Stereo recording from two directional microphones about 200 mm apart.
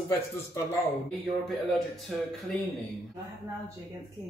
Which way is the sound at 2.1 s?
5° left (ahead or behind).